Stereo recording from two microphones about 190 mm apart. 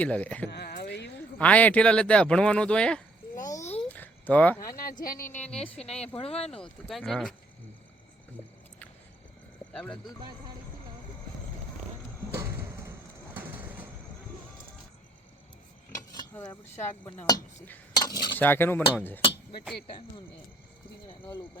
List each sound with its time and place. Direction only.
0.0 s speech: 10° left (ahead or behind)
0.5 s a sound: 60° left (ahead or behind)
1.4 s speech: 5° left (ahead or behind)
3.4 s a sound: 15° left (ahead or behind)
4.8 s speech: 50° left (ahead or behind)
5.5 s speech: 5° left (ahead or behind)
6.1 s speech: 30° left (ahead or behind)
6.6 s speech: centre (ahead or behind)
9.7 s speech: 5° left (ahead or behind)
12.3 s a sound: 15° right (ahead or behind)
13.3 s train: 10° right (ahead or behind)
16.4 s speech: 10° left (ahead or behind)
18.0 s cutlery: 20° left (ahead or behind)
18.3 s speech: 10° left (ahead or behind)